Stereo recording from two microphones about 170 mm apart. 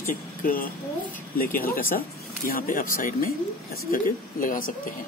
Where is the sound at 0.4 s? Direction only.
55° left (ahead or behind).